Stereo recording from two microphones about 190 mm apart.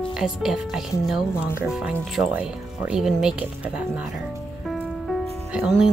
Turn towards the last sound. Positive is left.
turn(degrees=0)  # may be behind; listen again after turning